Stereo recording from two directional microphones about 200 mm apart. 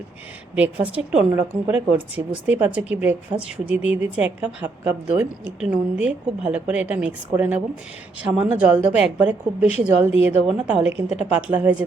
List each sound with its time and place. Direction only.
0.5 s a woman's voice: 5° right (ahead or behind)